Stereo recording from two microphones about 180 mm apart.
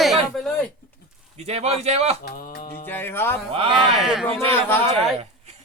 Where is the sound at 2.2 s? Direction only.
60° left (ahead or behind).